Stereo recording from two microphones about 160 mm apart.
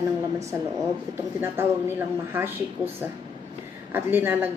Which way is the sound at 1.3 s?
15° right (ahead or behind).